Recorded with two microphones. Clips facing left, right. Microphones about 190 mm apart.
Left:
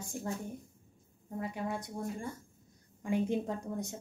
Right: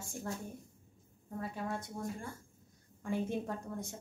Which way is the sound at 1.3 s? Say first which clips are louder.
Left 2 dB; 15° left (ahead or behind).